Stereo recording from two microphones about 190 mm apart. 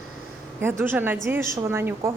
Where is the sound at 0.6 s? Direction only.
10° right (ahead or behind).